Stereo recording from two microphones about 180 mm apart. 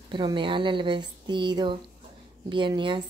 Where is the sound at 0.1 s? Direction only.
25° right (ahead or behind).